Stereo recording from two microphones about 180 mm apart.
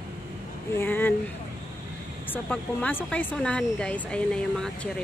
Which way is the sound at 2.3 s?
10° left (ahead or behind).